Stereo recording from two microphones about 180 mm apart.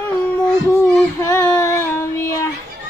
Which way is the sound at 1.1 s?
15° left (ahead or behind).